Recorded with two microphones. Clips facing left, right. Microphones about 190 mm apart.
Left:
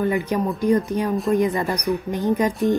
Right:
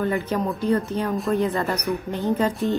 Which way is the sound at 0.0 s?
15° left (ahead or behind).